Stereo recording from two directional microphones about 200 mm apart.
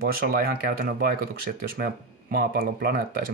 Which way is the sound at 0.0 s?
50° right (ahead or behind).